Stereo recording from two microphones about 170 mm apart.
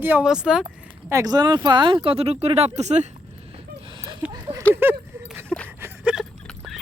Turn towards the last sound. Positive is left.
turn(degrees=-10)  # may be behind; listen again after turning